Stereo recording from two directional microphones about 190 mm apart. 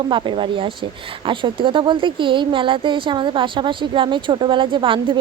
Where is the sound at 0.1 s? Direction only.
25° right (ahead or behind).